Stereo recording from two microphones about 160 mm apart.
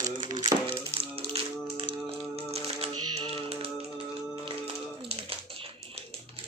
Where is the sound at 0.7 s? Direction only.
35° right (ahead or behind).